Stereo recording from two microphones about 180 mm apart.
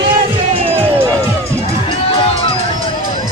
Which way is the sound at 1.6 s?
35° left (ahead or behind).